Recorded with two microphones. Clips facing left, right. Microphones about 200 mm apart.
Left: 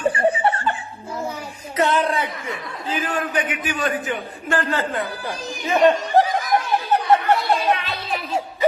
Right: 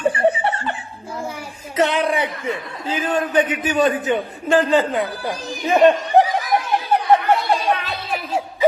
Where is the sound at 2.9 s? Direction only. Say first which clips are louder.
Right 3 dB; 25° right (ahead or behind).